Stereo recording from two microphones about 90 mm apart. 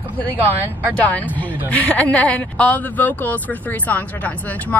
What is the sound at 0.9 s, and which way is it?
Speech, 15° left (ahead or behind).